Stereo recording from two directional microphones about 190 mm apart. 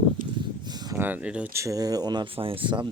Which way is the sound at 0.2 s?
45° right (ahead or behind).